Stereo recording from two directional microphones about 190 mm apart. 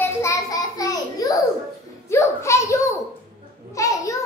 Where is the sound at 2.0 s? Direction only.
15° left (ahead or behind).